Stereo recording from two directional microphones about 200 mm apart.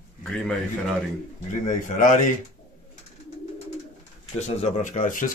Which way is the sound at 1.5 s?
40° left (ahead or behind).